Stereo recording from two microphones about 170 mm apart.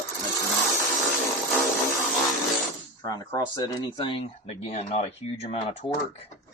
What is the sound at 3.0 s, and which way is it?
Speech, 20° left (ahead or behind).